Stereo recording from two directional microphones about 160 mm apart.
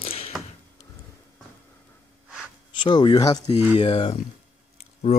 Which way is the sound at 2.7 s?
30° left (ahead or behind).